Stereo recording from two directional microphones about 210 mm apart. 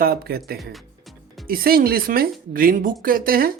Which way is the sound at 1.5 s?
45° right (ahead or behind).